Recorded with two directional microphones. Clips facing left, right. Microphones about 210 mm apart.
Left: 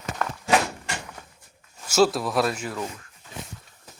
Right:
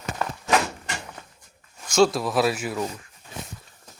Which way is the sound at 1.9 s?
5° left (ahead or behind).